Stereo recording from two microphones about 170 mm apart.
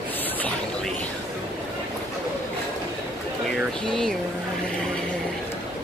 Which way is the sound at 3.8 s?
5° left (ahead or behind).